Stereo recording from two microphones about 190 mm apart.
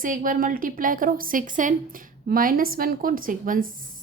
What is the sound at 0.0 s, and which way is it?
Speech, 45° right (ahead or behind).